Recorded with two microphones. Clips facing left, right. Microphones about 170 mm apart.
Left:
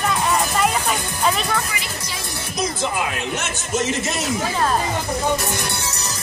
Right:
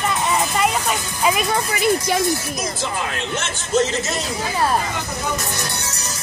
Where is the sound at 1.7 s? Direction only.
55° right (ahead or behind).